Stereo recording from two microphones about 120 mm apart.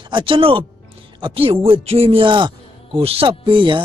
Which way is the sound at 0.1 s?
45° right (ahead or behind).